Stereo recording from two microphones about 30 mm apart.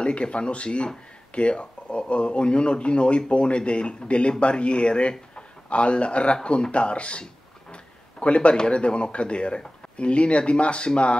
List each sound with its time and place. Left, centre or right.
0.0 s a man's voice: left
7.7 s a sound: left
8.7 s speech: left